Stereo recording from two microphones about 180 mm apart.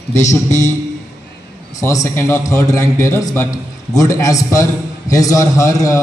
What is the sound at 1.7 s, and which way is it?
A man's voice, 20° left (ahead or behind).